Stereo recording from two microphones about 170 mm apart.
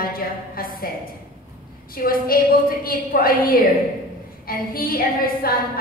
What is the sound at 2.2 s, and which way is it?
Speech, 60° left (ahead or behind).